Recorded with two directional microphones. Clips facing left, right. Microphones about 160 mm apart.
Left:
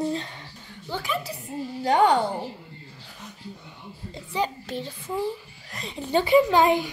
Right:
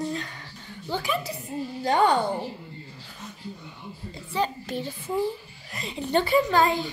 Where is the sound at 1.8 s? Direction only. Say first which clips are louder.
Left 2 dB; 15° left (ahead or behind).